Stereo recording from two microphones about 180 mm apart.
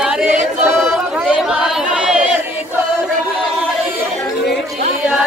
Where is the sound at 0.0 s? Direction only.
5° right (ahead or behind).